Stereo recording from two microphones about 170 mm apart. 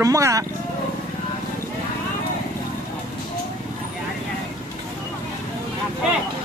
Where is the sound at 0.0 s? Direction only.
20° right (ahead or behind).